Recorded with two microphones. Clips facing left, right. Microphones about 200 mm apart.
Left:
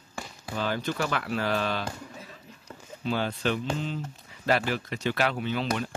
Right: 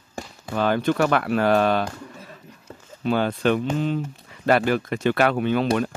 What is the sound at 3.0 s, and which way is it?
Speech, 55° right (ahead or behind).